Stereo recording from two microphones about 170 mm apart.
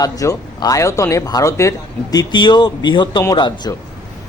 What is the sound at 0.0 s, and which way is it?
Speech, 20° left (ahead or behind).